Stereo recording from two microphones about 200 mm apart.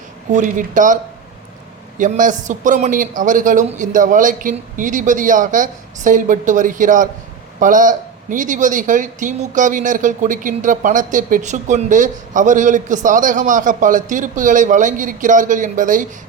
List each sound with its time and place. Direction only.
0.3 s speech: 40° right (ahead or behind)
2.0 s speech: 40° right (ahead or behind)